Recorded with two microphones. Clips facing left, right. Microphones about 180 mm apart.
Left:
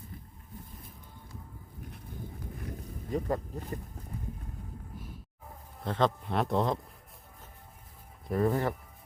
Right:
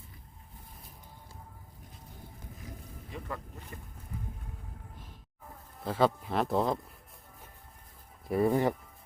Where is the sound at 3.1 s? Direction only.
40° left (ahead or behind).